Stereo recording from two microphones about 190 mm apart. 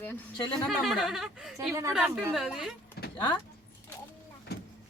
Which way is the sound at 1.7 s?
15° right (ahead or behind).